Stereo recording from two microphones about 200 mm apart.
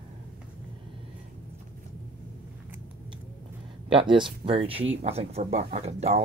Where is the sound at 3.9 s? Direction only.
25° right (ahead or behind).